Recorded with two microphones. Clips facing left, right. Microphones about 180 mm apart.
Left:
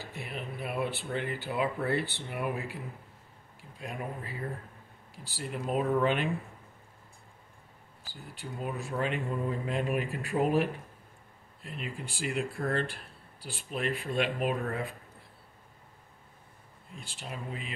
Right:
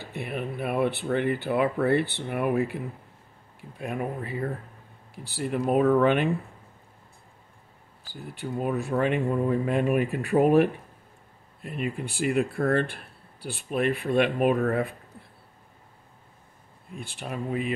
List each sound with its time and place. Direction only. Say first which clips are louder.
0.1 s speech: right 10 dB; 60° right (ahead or behind)
8.1 s speech: right 9 dB; 60° right (ahead or behind)
16.9 s speech: right 8 dB; 60° right (ahead or behind)